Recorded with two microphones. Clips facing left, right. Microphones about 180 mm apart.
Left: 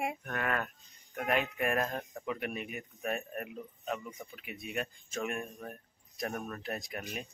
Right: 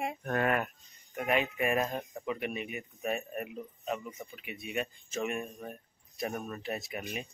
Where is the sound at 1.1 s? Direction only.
5° right (ahead or behind).